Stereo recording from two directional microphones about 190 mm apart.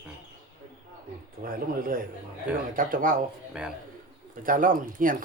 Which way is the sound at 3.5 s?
5° right (ahead or behind).